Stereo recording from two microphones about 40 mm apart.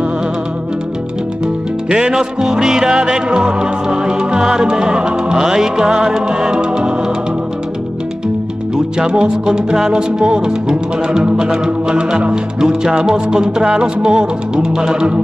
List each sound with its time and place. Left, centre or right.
1.9 s music: right
9.0 s music: centre